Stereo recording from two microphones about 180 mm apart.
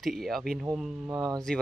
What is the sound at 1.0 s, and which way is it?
Speech, 20° right (ahead or behind).